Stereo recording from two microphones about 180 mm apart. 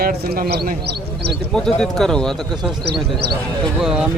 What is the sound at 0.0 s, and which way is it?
A man's voice, 55° right (ahead or behind).